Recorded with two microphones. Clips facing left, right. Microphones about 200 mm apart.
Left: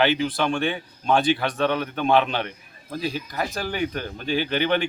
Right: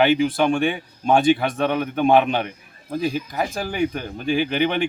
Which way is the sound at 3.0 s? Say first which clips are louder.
Right 5 dB; 50° right (ahead or behind).